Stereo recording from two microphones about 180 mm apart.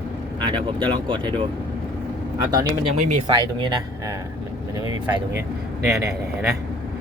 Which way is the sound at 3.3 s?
25° right (ahead or behind).